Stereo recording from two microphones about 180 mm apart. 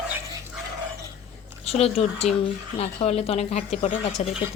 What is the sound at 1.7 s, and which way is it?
Speech, 35° left (ahead or behind).